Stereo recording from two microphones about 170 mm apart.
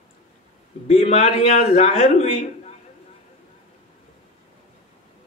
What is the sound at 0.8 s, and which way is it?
A man's voice, 35° left (ahead or behind).